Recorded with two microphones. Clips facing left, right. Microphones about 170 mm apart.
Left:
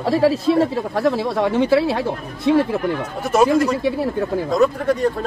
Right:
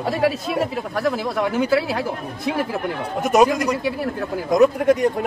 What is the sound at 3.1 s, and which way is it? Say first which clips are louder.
Speech: even; 15° right (ahead or behind).